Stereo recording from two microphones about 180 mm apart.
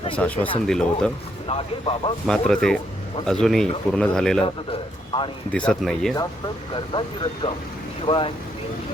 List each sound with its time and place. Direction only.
0.2 s speech: 5° left (ahead or behind)
1.5 s speech: 30° left (ahead or behind)
2.2 s speech: 5° left (ahead or behind)
4.4 s a man's voice: 30° left (ahead or behind)
5.5 s speech: 5° left (ahead or behind)
6.9 s a man's voice: 25° left (ahead or behind)